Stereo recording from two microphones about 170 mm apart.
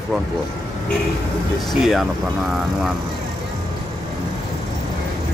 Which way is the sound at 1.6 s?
Centre (ahead or behind).